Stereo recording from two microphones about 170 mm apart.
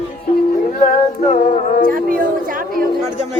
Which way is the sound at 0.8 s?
50° left (ahead or behind).